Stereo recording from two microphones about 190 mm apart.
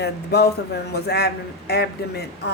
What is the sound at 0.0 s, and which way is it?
A woman's voice, 60° left (ahead or behind).